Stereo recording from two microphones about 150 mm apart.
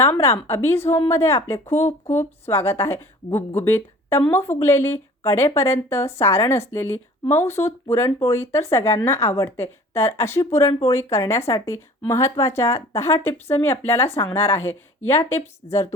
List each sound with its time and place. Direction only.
0.0 s speech: 15° left (ahead or behind)
15.6 s a woman's voice: 40° left (ahead or behind)